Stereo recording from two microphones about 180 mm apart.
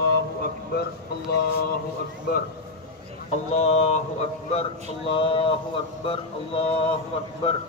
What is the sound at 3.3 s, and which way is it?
A man's voice, 40° left (ahead or behind).